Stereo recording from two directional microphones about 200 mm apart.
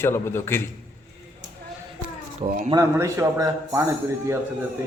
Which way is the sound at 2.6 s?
15° right (ahead or behind).